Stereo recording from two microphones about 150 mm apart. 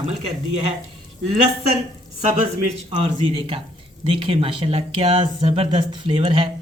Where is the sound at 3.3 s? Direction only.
35° right (ahead or behind).